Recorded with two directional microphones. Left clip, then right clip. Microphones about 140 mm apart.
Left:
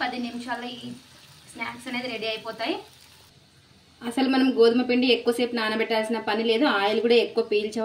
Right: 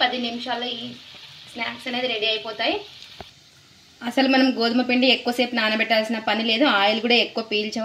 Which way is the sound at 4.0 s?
25° right (ahead or behind).